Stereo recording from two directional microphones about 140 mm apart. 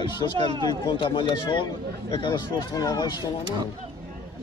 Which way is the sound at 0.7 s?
35° left (ahead or behind).